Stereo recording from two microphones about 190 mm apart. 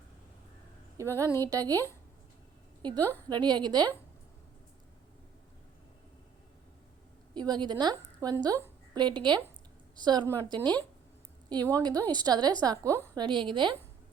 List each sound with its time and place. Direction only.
0.9 s speech: 15° right (ahead or behind)
3.0 s a woman's voice: 10° left (ahead or behind)
3.2 s a woman's voice: 20° right (ahead or behind)
7.3 s a woman's voice: 20° right (ahead or behind)
11.4 s a woman's voice: 20° right (ahead or behind)